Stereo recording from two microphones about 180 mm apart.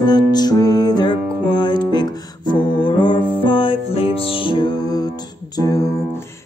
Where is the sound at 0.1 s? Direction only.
20° left (ahead or behind).